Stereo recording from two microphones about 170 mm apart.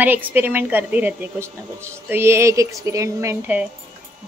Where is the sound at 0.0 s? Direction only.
10° right (ahead or behind).